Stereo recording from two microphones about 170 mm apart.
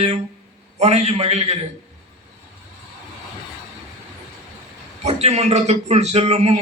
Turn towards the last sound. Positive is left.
turn(degrees=-40)  # may be behind; listen again after turning